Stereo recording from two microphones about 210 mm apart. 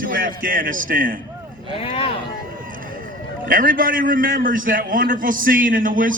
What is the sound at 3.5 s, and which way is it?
A man's voice, 40° right (ahead or behind).